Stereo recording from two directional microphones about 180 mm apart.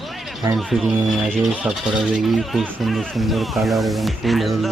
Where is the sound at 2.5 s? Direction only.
Centre (ahead or behind).